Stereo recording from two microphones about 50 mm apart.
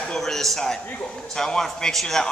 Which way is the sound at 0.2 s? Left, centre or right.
Centre.